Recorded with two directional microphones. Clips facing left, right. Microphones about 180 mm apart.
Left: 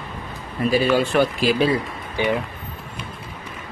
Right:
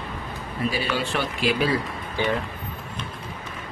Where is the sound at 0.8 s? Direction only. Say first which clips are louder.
Left 8 dB; 45° left (ahead or behind).